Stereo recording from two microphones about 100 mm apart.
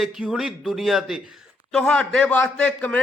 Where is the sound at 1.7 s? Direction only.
5° left (ahead or behind).